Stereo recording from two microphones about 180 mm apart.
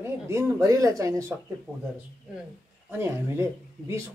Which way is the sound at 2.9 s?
15° right (ahead or behind).